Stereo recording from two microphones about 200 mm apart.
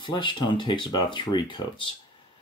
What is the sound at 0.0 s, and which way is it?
Speech, 25° left (ahead or behind).